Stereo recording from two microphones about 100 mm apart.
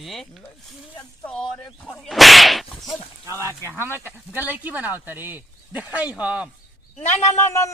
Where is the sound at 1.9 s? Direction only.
Centre (ahead or behind).